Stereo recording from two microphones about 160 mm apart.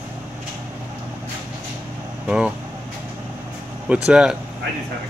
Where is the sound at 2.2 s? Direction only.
5° right (ahead or behind).